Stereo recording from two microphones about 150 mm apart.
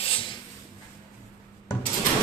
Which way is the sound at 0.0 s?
35° left (ahead or behind).